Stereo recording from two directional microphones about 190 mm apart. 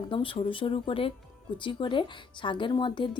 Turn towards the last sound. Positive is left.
turn(degrees=25)  # may be behind; listen again after turning